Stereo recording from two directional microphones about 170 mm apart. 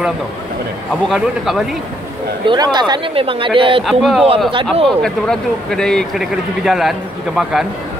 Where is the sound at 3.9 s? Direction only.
Centre (ahead or behind).